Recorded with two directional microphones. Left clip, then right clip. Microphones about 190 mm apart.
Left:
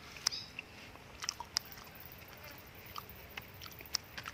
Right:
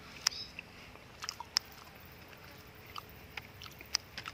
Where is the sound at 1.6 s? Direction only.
25° right (ahead or behind).